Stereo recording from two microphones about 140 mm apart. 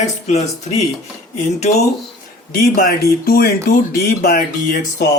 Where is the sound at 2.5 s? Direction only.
90° left.